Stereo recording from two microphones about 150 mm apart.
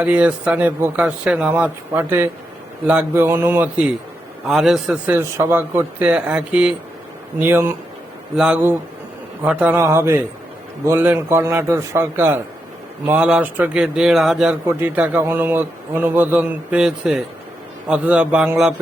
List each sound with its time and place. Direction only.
0.0 s a man's voice: 10° right (ahead or behind)